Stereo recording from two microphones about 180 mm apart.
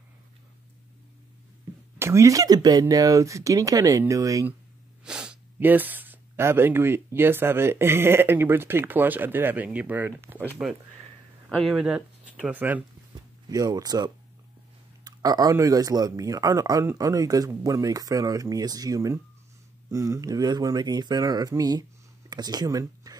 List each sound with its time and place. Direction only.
2.0 s speech: 15° right (ahead or behind)
5.0 s speech: 5° right (ahead or behind)
13.5 s speech: 20° right (ahead or behind)